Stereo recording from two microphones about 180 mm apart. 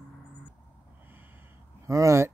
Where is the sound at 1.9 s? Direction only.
15° right (ahead or behind).